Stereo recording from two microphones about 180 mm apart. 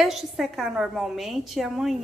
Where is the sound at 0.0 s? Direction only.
Centre (ahead or behind).